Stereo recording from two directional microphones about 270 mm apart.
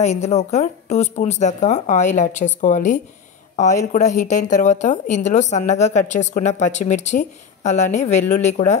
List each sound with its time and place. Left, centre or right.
0.0 s speech: left